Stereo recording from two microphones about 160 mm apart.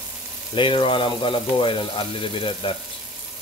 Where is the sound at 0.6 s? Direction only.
30° left (ahead or behind).